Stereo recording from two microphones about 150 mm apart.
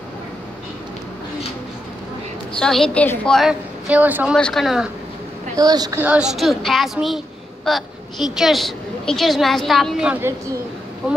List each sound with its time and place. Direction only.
2.5 s a woman's voice: 5° left (ahead or behind)
4.4 s a woman's voice: 5° left (ahead or behind)
5.6 s a woman's voice: 25° right (ahead or behind)
5.9 s a woman's voice: 10° right (ahead or behind)